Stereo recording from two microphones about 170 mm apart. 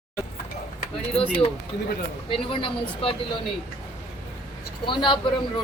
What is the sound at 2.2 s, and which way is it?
Speech, 30° left (ahead or behind).